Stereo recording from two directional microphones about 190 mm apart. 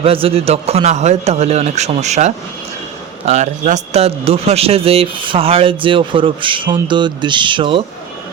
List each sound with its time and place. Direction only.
0.0 s a man's voice: 30° right (ahead or behind)